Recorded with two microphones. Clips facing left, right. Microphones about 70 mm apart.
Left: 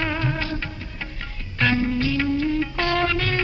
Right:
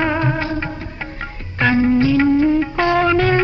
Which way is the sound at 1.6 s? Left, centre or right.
Right.